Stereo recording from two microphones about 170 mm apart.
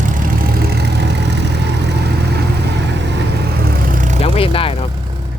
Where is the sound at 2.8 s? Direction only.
90° right; by 4.1 s 55° right (ahead or behind).